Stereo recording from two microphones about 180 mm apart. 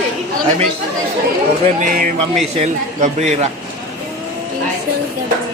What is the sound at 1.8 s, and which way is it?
A man's voice, 50° right (ahead or behind).